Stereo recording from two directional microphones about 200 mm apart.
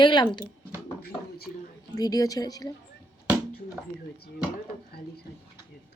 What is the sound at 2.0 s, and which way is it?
Speech, 20° left (ahead or behind).